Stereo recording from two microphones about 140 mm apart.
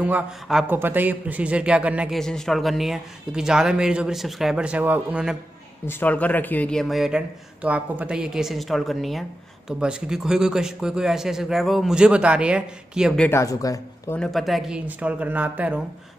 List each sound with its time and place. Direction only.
0.0 s speech: 5° right (ahead or behind)
2.1 s a man's voice: 5° left (ahead or behind)
5.9 s a man's voice: 15° left (ahead or behind); by 13.2 s 5° right (ahead or behind)
13.3 s speech: 20° left (ahead or behind)
14.1 s speech: 5° left (ahead or behind)